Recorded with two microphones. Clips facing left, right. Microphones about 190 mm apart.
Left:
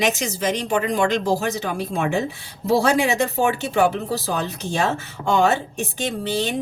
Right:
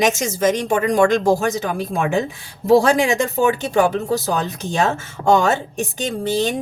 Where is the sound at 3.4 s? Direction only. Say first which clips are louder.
Right 3 dB; 45° right (ahead or behind).